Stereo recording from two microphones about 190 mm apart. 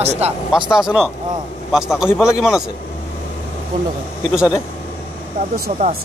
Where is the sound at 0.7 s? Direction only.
5° right (ahead or behind).